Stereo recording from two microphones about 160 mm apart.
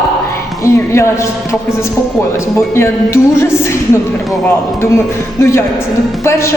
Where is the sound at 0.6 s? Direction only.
15° left (ahead or behind).